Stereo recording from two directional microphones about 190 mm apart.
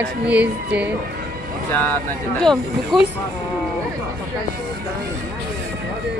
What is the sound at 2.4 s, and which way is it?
Speech, centre (ahead or behind).